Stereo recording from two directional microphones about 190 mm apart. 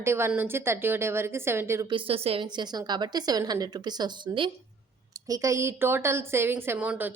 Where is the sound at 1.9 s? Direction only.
30° right (ahead or behind).